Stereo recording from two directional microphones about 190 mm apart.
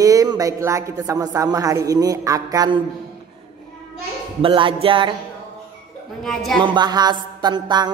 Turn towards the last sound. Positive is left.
turn(degrees=-20)  # may be behind; listen again after turning